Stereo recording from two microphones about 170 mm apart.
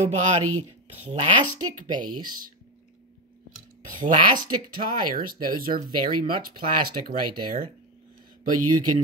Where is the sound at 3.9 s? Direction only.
50° right (ahead or behind).